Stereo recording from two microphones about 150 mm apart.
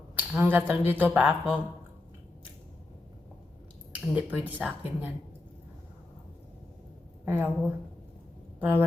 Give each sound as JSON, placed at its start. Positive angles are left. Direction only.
{"t": 0.2, "sound": "speech", "side_deg": -15}
{"t": 4.0, "sound": "speech", "side_deg": -10}
{"t": 7.3, "sound": "speech", "side_deg": -15}